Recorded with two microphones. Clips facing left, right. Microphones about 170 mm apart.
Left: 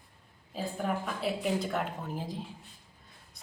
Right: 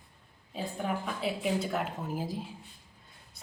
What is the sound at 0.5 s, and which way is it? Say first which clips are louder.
A woman's voice: left 1 dB; centre (ahead or behind).